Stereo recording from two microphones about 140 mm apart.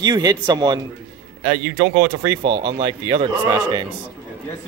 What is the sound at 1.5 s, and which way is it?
Speech, 15° right (ahead or behind).